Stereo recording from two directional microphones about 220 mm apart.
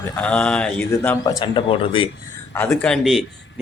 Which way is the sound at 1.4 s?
25° left (ahead or behind).